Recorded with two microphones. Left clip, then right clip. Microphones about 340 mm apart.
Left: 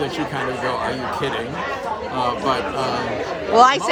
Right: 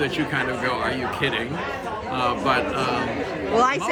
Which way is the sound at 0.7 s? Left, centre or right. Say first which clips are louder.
Left 2 dB; centre.